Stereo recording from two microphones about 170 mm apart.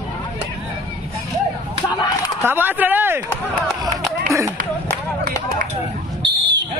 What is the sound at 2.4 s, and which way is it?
Speech, 10° right (ahead or behind).